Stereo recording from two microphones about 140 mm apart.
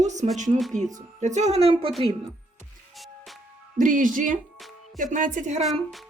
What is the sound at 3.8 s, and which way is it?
Speech, 75° right (ahead or behind).